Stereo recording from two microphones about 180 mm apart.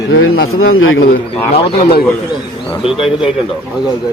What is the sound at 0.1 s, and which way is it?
Speech, 90° left.